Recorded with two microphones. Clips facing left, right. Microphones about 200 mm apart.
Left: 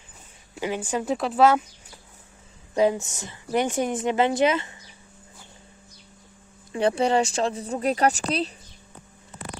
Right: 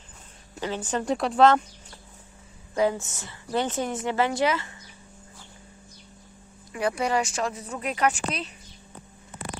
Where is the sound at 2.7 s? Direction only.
20° left (ahead or behind).